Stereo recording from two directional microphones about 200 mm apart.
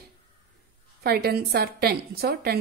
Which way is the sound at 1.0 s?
50° right (ahead or behind).